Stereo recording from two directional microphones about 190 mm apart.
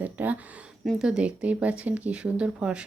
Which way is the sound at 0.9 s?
5° right (ahead or behind).